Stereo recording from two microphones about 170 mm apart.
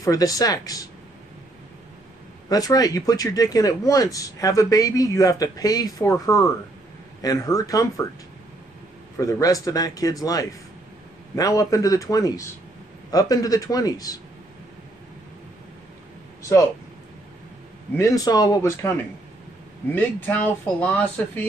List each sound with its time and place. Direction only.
0.0 s speech: 20° left (ahead or behind)
2.5 s speech: 20° left (ahead or behind)
9.2 s speech: 20° left (ahead or behind)
17.9 s speech: 20° left (ahead or behind)
19.9 s speech: 10° left (ahead or behind)